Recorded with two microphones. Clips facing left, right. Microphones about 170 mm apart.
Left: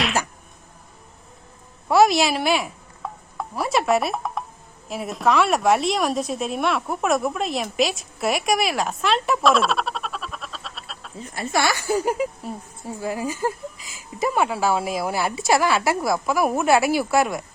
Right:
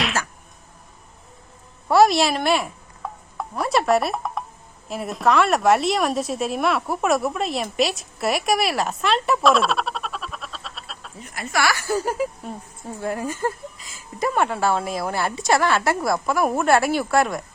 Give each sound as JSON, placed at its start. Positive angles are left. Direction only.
{"t": 1.9, "sound": "stir", "side_deg": 0}
{"t": 4.9, "sound": "a woman's voice", "side_deg": 0}
{"t": 11.2, "sound": "speech", "side_deg": 30}
{"t": 13.0, "sound": "a woman's voice", "side_deg": 5}